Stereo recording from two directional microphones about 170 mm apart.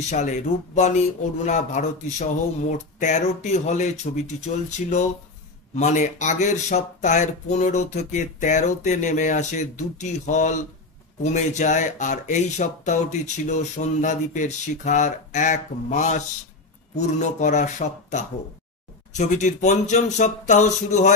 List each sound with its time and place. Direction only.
0.1 s speech: 45° left (ahead or behind)